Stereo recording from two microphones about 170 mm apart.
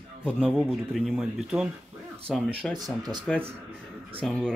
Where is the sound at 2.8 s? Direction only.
25° right (ahead or behind).